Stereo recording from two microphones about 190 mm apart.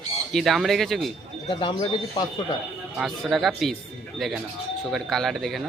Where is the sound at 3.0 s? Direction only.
Centre (ahead or behind).